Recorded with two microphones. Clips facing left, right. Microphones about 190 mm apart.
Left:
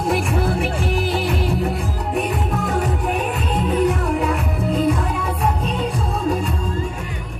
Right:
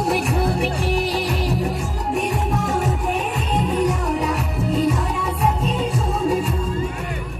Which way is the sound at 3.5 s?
40° right (ahead or behind).